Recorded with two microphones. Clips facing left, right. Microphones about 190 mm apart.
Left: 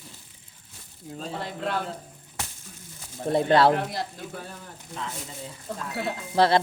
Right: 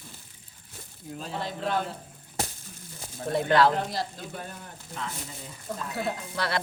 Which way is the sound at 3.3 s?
30° left (ahead or behind).